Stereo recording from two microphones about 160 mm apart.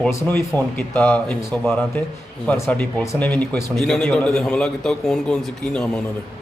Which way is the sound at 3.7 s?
5° left (ahead or behind).